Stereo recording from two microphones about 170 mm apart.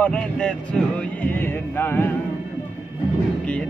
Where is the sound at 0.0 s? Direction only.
5° left (ahead or behind).